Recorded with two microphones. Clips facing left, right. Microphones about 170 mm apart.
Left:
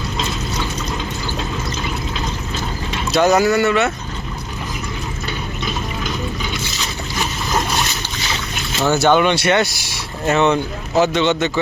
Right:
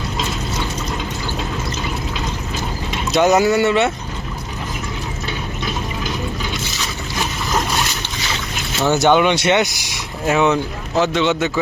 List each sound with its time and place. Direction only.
2.9 s speech: 20° right (ahead or behind)
8.9 s speech: 15° right (ahead or behind)
10.2 s a man's voice: 5° right (ahead or behind)